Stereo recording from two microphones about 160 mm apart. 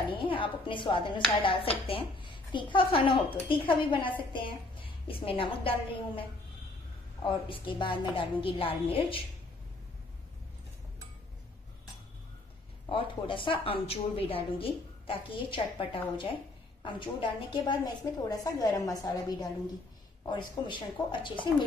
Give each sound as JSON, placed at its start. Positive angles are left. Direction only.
{"t": 0.1, "sound": "a woman's voice", "side_deg": 30}
{"t": 7.2, "sound": "a woman's voice", "side_deg": 30}
{"t": 12.8, "sound": "a woman's voice", "side_deg": 30}